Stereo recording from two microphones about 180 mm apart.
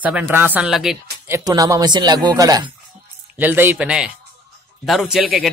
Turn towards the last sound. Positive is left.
turn(degrees=0)  # may be behind; listen again after turning